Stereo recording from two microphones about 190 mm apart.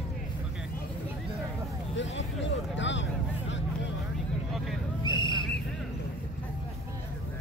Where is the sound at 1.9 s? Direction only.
75° left (ahead or behind).